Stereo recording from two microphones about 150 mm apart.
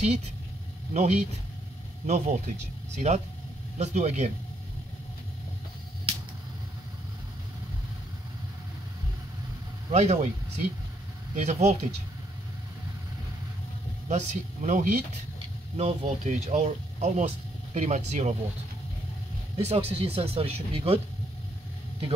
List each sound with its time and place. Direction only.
0.9 s speech: 45° right (ahead or behind)
9.8 s speech: 45° right (ahead or behind)
11.3 s speech: 50° right (ahead or behind)
14.0 s speech: 55° right (ahead or behind)
15.3 s speech: 45° right (ahead or behind)
19.5 s speech: 45° right (ahead or behind)